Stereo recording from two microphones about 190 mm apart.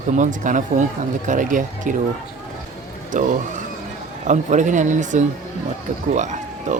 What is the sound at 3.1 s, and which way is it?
Speech, 40° right (ahead or behind).